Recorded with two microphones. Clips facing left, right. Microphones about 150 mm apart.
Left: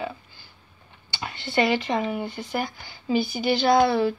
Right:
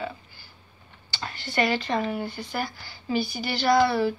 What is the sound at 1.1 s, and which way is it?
Speech, 20° left (ahead or behind).